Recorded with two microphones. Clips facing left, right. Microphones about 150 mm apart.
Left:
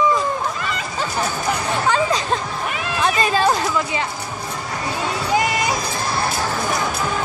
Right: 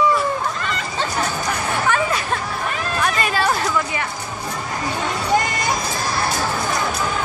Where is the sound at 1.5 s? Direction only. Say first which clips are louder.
Left 2 dB; 20° left (ahead or behind).